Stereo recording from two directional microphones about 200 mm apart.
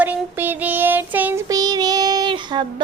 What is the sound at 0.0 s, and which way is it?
Child singing, 10° right (ahead or behind).